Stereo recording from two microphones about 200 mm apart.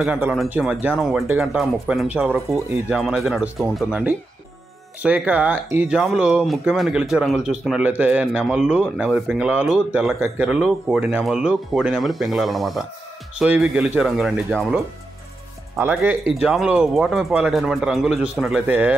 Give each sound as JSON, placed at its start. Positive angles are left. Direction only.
{"t": 0.0, "sound": "speech", "side_deg": -5}